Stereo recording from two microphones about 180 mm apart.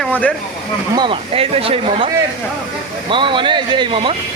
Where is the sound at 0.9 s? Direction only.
30° right (ahead or behind).